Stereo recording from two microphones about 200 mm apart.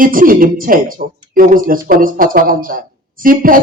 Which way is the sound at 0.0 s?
45° right (ahead or behind).